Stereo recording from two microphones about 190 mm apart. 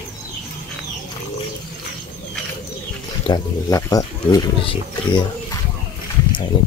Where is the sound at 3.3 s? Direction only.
20° left (ahead or behind).